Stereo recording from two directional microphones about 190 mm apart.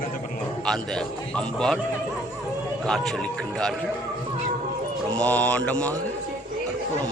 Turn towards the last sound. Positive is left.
turn(degrees=5)  # may be behind; listen again after turning